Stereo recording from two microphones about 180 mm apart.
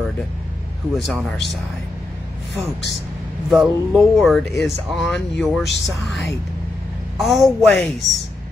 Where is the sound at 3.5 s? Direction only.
Centre (ahead or behind).